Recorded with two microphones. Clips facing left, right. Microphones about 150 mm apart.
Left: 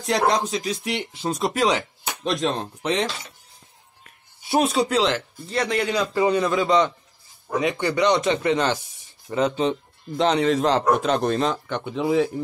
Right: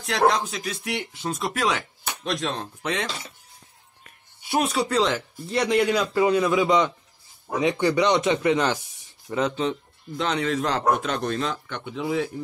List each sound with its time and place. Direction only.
0.0 s a man's voice: 35° left (ahead or behind)
4.5 s a man's voice: 25° left (ahead or behind)
5.0 s speech: 5° right (ahead or behind)
9.6 s a man's voice: 25° left (ahead or behind)